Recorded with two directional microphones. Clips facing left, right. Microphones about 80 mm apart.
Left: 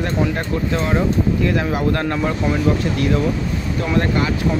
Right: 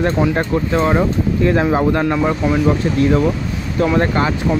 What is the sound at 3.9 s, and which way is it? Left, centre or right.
Speech, right.